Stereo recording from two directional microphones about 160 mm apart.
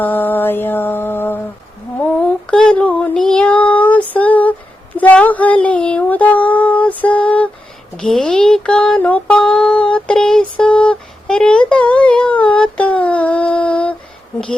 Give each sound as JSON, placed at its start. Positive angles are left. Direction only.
{"t": 0.0, "sound": "mantra", "side_deg": 10}
{"t": 2.5, "sound": "child singing", "side_deg": 5}
{"t": 4.9, "sound": "a sound", "side_deg": 10}